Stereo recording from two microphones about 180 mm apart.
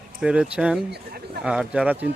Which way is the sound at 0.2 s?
5° right (ahead or behind).